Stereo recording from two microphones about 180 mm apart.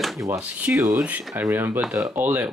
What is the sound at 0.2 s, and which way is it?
Speech, 10° right (ahead or behind).